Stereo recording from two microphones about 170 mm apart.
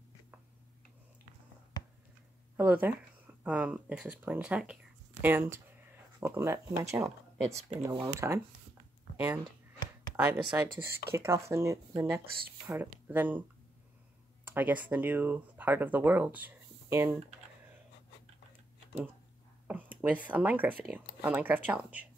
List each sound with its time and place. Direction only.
1.8 s a sound: 25° left (ahead or behind)
2.5 s speech: 10° right (ahead or behind)
14.5 s speech: 10° right (ahead or behind)
19.7 s speech: 10° right (ahead or behind)